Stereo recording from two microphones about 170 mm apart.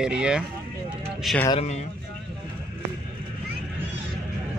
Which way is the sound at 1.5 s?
35° left (ahead or behind).